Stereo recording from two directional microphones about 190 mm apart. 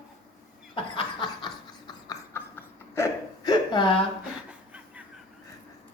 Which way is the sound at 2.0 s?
15° left (ahead or behind).